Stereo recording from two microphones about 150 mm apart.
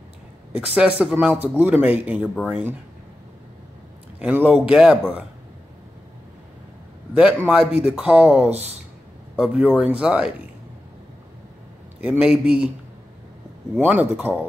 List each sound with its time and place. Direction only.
0.6 s speech: 10° right (ahead or behind)
4.2 s speech: 10° right (ahead or behind)
7.2 s a man's voice: 5° right (ahead or behind)
8.5 s speech: 45° right (ahead or behind)
9.4 s speech: 10° right (ahead or behind)
12.0 s speech: 5° right (ahead or behind)
13.7 s speech: 10° right (ahead or behind)